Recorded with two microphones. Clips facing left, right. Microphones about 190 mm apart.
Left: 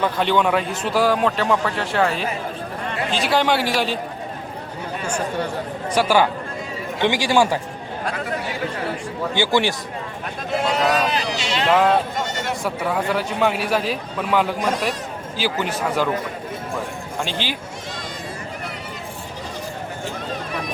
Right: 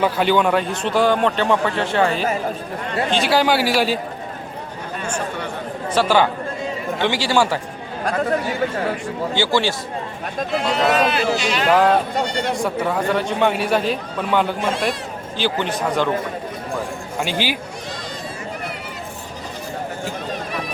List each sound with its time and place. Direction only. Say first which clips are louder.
0.0 s a man's voice: right 2 dB; 5° right (ahead or behind)
5.9 s speech: right 1 dB; 10° left (ahead or behind)
8.0 s speech: right 7 dB; 45° right (ahead or behind)
9.3 s speech: even; 15° left (ahead or behind)
10.8 s speech: right 3 dB; 35° left (ahead or behind)
11.7 s a man's voice: right 1 dB; centre (ahead or behind)
14.6 s a man's voice: even; 40° left (ahead or behind)
15.4 s a man's voice: right 2 dB; 5° left (ahead or behind)
17.2 s speech: right 4 dB; 10° right (ahead or behind)